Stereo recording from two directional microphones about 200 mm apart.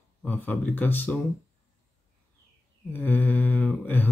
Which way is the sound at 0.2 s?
10° left (ahead or behind).